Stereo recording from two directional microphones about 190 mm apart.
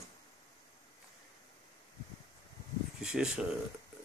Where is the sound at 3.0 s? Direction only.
5° right (ahead or behind).